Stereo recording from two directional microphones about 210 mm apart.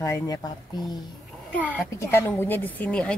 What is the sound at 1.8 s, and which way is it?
A woman's voice, 15° left (ahead or behind).